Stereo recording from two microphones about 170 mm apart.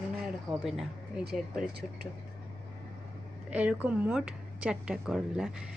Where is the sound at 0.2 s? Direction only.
Centre (ahead or behind).